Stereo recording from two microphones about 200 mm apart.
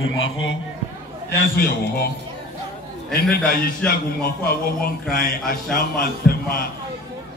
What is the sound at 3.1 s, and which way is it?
A man's voice, 50° left (ahead or behind).